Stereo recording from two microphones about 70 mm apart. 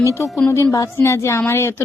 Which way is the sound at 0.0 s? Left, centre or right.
Left.